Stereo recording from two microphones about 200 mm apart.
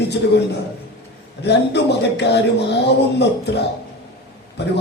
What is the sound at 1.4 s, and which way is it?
A man's voice, 55° left (ahead or behind).